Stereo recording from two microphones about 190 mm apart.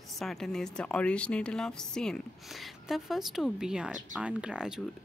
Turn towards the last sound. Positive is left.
turn(degrees=-5)  # may be behind; listen again after turning